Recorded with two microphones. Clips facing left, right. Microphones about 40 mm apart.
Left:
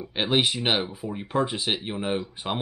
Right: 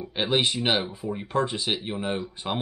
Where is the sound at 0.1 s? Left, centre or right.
Centre.